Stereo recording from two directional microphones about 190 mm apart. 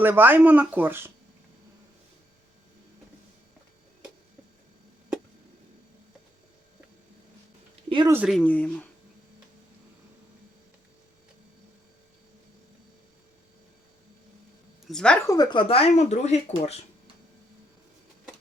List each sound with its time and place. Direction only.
0.0 s speech: 10° right (ahead or behind)
7.9 s speech: 25° right (ahead or behind)
8.1 s speech: 5° right (ahead or behind)
8.4 s speech: 5° left (ahead or behind)
14.8 s speech: 5° left (ahead or behind); by 16.8 s 35° left (ahead or behind)